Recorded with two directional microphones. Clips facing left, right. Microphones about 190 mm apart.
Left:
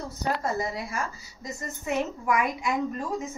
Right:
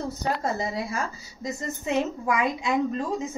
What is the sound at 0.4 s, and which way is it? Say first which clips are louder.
A woman's voice: right 1 dB; 25° right (ahead or behind).